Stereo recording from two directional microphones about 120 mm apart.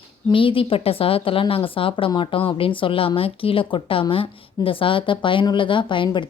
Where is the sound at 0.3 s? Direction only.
45° left (ahead or behind).